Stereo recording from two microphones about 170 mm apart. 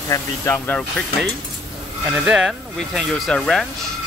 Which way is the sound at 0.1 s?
10° left (ahead or behind).